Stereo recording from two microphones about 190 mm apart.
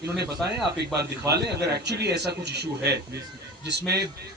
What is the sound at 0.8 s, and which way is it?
Speech, 60° right (ahead or behind).